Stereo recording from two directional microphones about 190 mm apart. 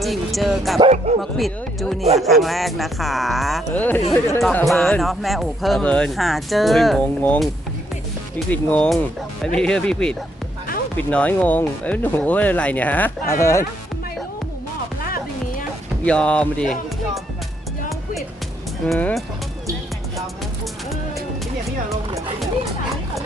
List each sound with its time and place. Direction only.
0.0 s music: centre (ahead or behind)
0.8 s speech: 35° right (ahead or behind)
1.2 s speech: centre (ahead or behind)
15.0 s music: 50° left (ahead or behind)
16.0 s speech: 5° left (ahead or behind)
17.8 s music: centre (ahead or behind)
18.9 s speech: 5° left (ahead or behind)